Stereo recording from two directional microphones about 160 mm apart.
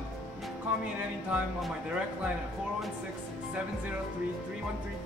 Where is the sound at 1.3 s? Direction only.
Centre (ahead or behind).